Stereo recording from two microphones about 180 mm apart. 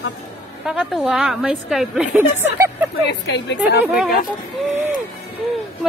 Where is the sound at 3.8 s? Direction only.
5° right (ahead or behind).